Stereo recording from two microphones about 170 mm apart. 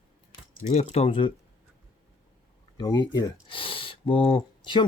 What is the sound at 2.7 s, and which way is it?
A man's voice, 25° left (ahead or behind).